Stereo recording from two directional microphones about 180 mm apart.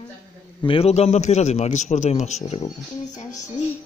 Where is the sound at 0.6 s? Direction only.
30° left (ahead or behind).